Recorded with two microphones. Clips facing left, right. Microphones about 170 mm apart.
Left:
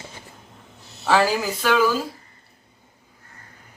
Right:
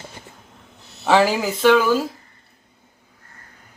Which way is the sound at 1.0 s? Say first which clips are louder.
Right 3 dB; 20° right (ahead or behind).